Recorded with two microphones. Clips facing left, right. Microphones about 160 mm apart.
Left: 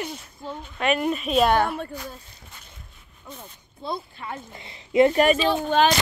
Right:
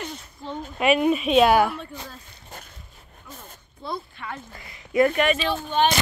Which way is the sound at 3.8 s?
25° left (ahead or behind).